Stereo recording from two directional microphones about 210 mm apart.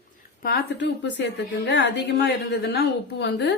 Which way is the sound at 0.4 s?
50° left (ahead or behind).